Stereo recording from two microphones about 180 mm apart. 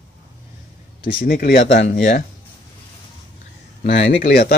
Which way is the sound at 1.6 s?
80° left.